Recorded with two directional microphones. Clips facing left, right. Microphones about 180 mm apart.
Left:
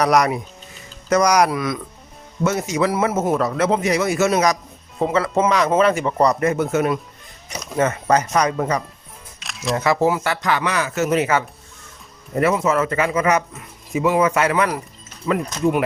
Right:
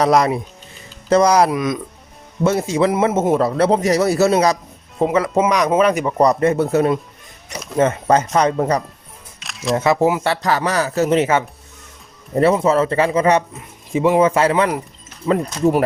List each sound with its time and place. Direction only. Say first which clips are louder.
0.0 s speech: right 2 dB; 25° right (ahead or behind)
2.4 s speech: right 3 dB; 30° right (ahead or behind)
4.9 s speech: right 2 dB; 15° right (ahead or behind)
6.4 s speech: right 3 dB; 35° right (ahead or behind)
9.4 s single-lens reflex camera: right 3 dB; centre (ahead or behind)
9.7 s speech: right 2 dB; 20° right (ahead or behind)
10.2 s speech: right 3 dB; 35° right (ahead or behind)